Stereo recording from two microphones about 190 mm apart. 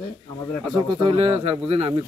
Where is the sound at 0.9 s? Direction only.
25° right (ahead or behind).